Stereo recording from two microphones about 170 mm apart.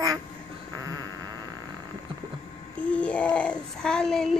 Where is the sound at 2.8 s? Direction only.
5° left (ahead or behind).